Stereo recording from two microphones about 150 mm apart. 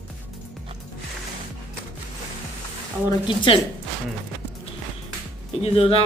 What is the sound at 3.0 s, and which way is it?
Speech, 35° left (ahead or behind).